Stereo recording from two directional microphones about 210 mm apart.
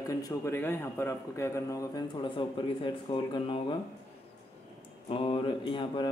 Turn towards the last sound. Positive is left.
turn(degrees=20)  # may be behind; listen again after turning